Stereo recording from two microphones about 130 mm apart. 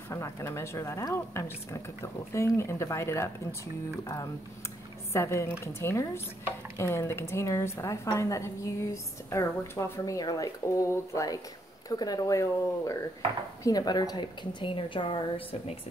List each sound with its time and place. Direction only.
0.1 s a woman's voice: 20° left (ahead or behind); by 15.8 s 40° left (ahead or behind)